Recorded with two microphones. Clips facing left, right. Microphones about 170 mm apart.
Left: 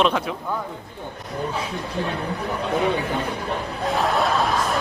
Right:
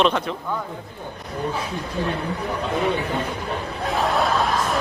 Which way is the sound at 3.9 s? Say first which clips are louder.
Even; centre (ahead or behind).